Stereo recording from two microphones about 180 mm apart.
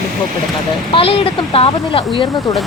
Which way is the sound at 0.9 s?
30° left (ahead or behind).